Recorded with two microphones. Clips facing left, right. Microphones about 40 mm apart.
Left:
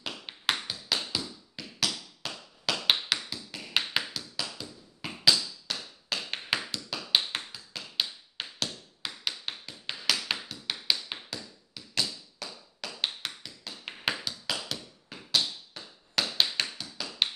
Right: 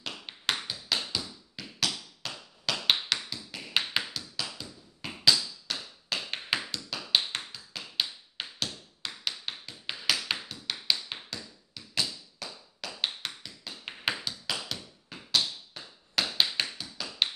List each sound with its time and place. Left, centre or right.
0.0 s tap: centre